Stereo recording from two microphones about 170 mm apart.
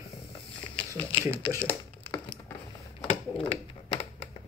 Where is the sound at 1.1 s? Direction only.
30° left (ahead or behind).